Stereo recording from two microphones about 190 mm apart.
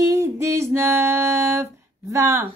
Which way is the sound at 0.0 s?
15° right (ahead or behind).